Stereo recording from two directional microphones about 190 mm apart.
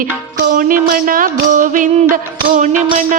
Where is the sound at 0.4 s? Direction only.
45° right (ahead or behind).